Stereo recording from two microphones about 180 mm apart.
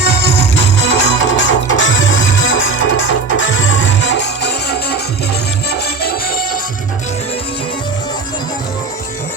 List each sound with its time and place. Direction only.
0.5 s music: 75° left (ahead or behind)
1.3 s music: 90° left; by 4.9 s 65° left (ahead or behind)
6.0 s music: 60° left (ahead or behind)